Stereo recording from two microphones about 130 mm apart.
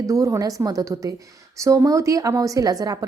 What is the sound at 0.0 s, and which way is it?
A woman's voice, 25° right (ahead or behind).